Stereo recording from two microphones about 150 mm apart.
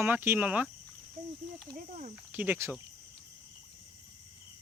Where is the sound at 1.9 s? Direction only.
50° right (ahead or behind).